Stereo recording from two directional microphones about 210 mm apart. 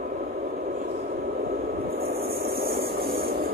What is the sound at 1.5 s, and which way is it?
Vehicle, 45° right (ahead or behind).